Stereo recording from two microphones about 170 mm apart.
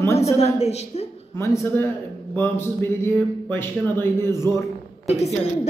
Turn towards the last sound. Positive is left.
turn(degrees=40)  # may be behind; listen again after turning